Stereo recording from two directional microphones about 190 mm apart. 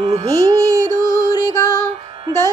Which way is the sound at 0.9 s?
45° right (ahead or behind).